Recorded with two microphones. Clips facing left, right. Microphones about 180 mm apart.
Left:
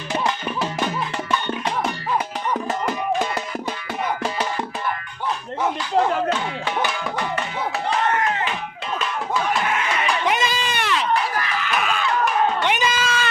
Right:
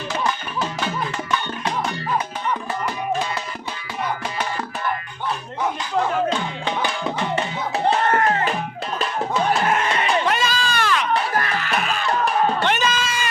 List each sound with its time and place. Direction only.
8.1 s music: 40° right (ahead or behind)
9.9 s sheep: 30° right (ahead or behind)
10.2 s a sound: 15° left (ahead or behind)
11.3 s music: 45° right (ahead or behind)
12.6 s cat: 10° left (ahead or behind)